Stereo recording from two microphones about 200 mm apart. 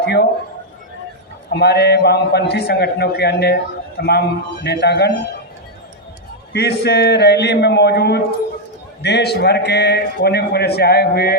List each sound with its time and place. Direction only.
0.0 s a man's voice: 55° left (ahead or behind)
1.5 s a man's voice: 55° left (ahead or behind)
6.5 s a man's voice: 55° left (ahead or behind)